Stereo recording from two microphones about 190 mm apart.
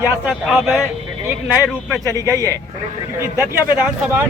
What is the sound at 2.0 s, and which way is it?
Speech, 15° right (ahead or behind).